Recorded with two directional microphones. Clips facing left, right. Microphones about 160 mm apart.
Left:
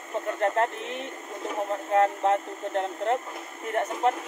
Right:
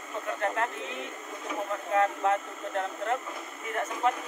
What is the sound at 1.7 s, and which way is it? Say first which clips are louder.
Speech: left 4 dB; 30° left (ahead or behind).